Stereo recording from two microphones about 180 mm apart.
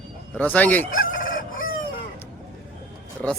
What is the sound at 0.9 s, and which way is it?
Crowing, 50° left (ahead or behind).